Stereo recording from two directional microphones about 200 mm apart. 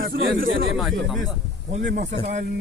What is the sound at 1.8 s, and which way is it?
Speech, 60° right (ahead or behind).